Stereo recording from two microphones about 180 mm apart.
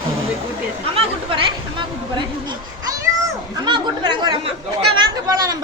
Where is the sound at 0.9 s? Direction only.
30° right (ahead or behind).